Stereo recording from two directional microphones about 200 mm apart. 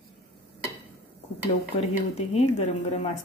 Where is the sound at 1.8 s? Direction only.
30° left (ahead or behind).